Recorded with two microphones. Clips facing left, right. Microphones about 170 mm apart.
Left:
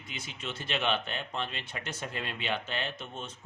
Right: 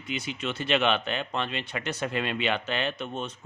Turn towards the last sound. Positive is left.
turn(degrees=-70)  # may be behind; listen again after turning